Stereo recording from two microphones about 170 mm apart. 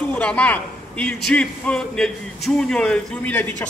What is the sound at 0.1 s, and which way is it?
A man's voice, 5° left (ahead or behind).